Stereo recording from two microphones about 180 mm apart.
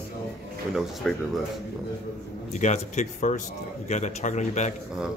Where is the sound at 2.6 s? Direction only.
40° left (ahead or behind).